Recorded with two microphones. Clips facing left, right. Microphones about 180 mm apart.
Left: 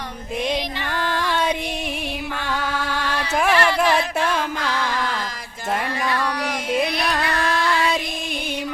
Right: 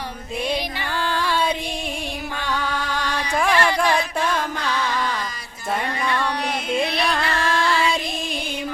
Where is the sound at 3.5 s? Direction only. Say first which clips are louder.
Left 1 dB; 15° right (ahead or behind).